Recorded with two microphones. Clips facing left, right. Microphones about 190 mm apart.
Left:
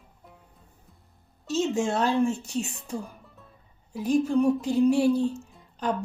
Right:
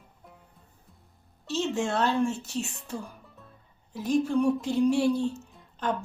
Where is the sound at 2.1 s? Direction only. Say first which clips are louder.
Left 3 dB; 5° left (ahead or behind).